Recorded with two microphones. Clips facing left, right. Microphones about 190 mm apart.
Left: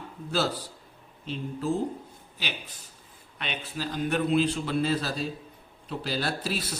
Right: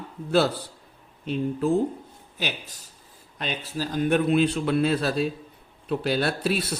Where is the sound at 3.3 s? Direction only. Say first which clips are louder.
Right 4 dB; 40° right (ahead or behind); by 6.8 s 60° right (ahead or behind).